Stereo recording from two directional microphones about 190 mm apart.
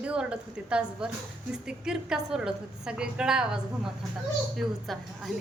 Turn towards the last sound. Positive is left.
turn(degrees=0)  # may be behind; listen again after turning